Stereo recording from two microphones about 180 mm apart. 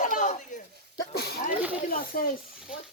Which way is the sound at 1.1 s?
60° left (ahead or behind).